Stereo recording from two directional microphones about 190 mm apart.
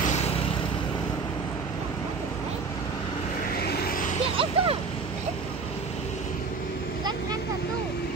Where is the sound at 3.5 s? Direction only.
55° left (ahead or behind).